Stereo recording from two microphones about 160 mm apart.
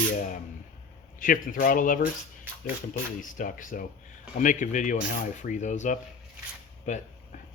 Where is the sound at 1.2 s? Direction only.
60° left (ahead or behind).